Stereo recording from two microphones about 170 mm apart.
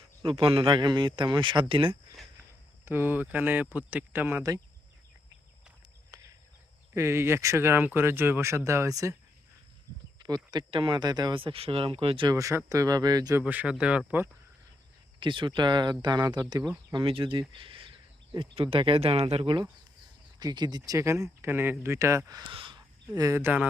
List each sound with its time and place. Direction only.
0.2 s speech: 30° right (ahead or behind)
2.8 s speech: 10° right (ahead or behind)
6.9 s speech: 15° right (ahead or behind)
10.2 s speech: 25° right (ahead or behind)
13.4 s speech: 10° right (ahead or behind)
15.2 s speech: 30° right (ahead or behind)
17.5 s a sound: 30° right (ahead or behind)
18.3 s speech: 30° right (ahead or behind); by 23.6 s 10° right (ahead or behind)